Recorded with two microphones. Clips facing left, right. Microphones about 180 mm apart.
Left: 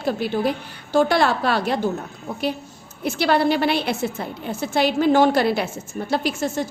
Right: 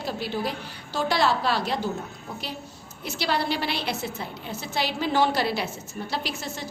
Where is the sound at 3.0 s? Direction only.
55° left (ahead or behind).